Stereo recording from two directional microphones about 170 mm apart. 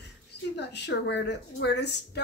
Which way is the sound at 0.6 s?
90° left.